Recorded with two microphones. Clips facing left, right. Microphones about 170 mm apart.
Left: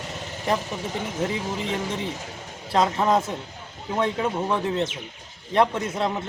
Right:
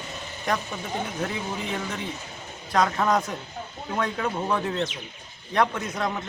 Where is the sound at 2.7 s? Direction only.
25° left (ahead or behind).